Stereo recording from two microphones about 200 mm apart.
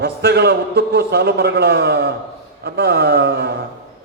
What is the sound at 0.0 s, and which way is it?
A man's voice, 55° right (ahead or behind).